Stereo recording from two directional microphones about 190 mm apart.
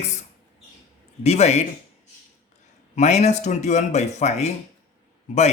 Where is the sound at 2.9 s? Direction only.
35° left (ahead or behind).